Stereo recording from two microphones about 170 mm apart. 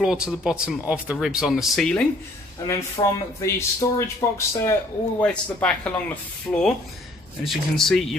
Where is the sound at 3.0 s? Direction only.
25° left (ahead or behind).